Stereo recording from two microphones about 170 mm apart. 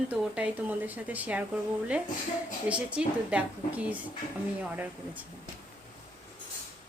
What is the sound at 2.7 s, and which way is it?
A woman's voice, 5° right (ahead or behind).